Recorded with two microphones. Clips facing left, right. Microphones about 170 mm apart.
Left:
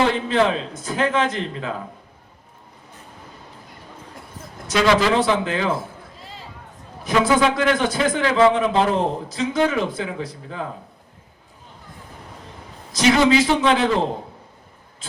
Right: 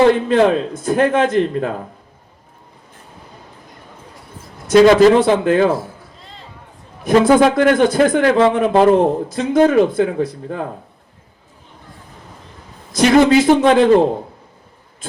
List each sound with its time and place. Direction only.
0.1 s a man's voice: 50° right (ahead or behind)
4.7 s a man's voice: 45° right (ahead or behind)
7.3 s a man's voice: 50° right (ahead or behind)
12.9 s a man's voice: 50° right (ahead or behind)